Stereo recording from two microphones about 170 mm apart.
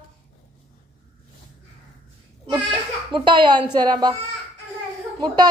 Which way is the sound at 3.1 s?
30° right (ahead or behind).